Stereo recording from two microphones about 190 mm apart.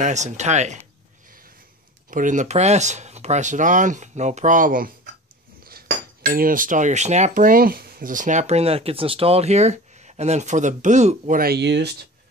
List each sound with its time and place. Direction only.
0.0 s speech: 35° right (ahead or behind)
2.0 s speech: 45° right (ahead or behind)
5.6 s cutlery: 50° right (ahead or behind)
6.3 s speech: 45° right (ahead or behind); by 12.1 s 65° right (ahead or behind)